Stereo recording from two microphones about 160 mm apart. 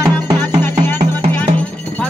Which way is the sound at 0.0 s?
20° right (ahead or behind).